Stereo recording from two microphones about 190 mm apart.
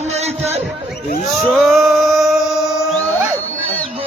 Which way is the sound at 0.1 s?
35° right (ahead or behind).